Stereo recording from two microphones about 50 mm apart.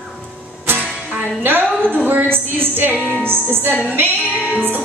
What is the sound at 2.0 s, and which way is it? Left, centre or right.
Music, right.